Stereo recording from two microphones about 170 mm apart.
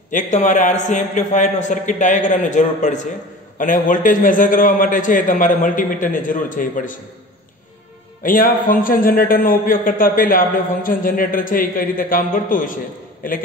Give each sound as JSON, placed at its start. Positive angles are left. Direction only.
{"t": 0.1, "sound": "a man's voice", "side_deg": 45}
{"t": 8.2, "sound": "a man's voice", "side_deg": 55}